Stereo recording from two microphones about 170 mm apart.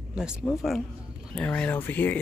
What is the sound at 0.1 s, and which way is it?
Speech, 5° right (ahead or behind).